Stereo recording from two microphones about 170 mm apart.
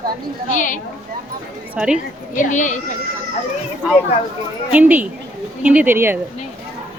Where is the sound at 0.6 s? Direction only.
50° left (ahead or behind).